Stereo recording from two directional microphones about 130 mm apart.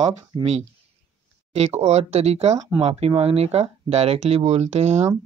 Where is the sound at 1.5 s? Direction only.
55° right (ahead or behind).